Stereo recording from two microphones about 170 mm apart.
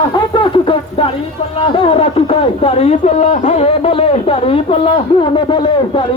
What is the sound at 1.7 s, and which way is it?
A man's voice, 30° left (ahead or behind).